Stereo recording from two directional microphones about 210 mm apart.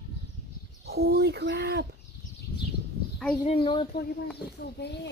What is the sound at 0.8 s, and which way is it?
Speech, 50° right (ahead or behind).